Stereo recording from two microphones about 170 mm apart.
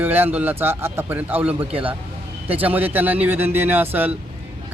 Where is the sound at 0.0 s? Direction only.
10° right (ahead or behind).